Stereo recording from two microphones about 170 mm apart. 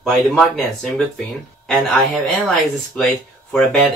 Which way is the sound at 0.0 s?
Centre (ahead or behind).